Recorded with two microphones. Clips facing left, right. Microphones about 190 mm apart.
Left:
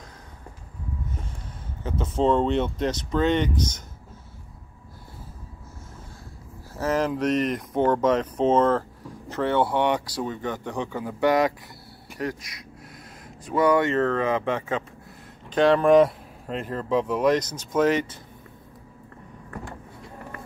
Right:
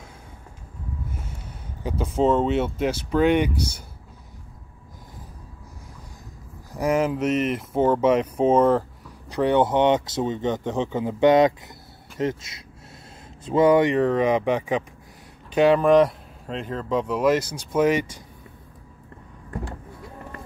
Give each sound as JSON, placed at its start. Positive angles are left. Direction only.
{"t": 1.8, "sound": "speech", "side_deg": -10}
{"t": 6.7, "sound": "speech", "side_deg": -10}